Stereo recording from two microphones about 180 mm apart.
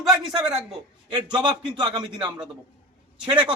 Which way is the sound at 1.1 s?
25° right (ahead or behind).